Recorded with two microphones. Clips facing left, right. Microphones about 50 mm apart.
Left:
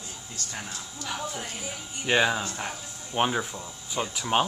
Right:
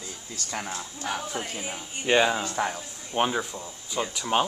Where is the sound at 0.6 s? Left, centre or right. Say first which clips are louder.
Right 4 dB; right.